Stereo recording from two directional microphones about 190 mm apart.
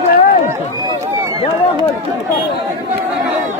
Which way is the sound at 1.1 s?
15° right (ahead or behind).